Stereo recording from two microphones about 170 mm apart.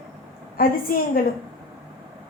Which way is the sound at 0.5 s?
55° left (ahead or behind).